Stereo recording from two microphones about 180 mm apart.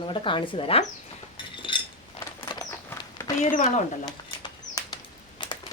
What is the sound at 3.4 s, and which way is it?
Speech, 40° left (ahead or behind).